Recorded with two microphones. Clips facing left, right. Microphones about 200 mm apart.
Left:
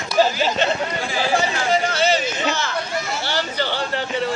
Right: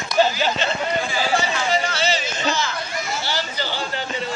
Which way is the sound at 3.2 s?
60° left (ahead or behind).